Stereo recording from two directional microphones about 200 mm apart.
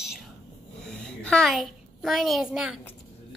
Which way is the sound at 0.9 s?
5° left (ahead or behind).